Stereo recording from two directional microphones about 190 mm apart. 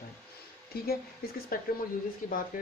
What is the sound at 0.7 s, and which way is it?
Speech, 55° left (ahead or behind).